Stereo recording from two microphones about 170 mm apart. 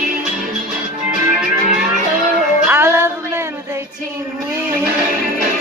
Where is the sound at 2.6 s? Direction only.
15° right (ahead or behind).